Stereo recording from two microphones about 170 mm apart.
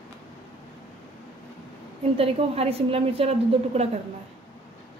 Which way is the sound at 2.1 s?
35° right (ahead or behind).